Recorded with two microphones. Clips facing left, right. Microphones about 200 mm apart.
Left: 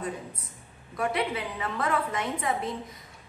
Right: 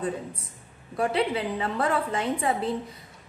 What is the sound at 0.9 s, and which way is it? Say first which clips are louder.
A woman's voice: right 4 dB; 30° right (ahead or behind).